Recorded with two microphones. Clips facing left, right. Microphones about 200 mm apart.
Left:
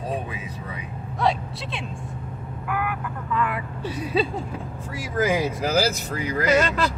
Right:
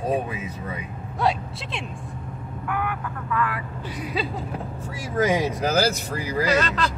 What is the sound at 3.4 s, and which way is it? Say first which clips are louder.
Speech: left 2 dB; 25° left (ahead or behind).